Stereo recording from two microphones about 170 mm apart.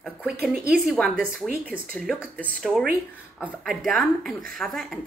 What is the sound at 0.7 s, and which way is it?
Speech, centre (ahead or behind).